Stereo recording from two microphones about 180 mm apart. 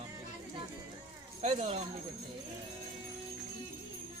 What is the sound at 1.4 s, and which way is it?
Speech, 35° right (ahead or behind).